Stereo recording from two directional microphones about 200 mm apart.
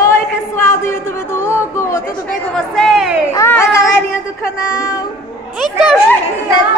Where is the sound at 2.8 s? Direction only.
Centre (ahead or behind).